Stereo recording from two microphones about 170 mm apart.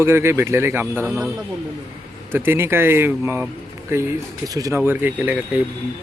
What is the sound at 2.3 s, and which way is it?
Speech, 15° right (ahead or behind).